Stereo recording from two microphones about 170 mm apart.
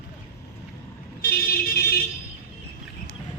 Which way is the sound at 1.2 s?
65° left (ahead or behind).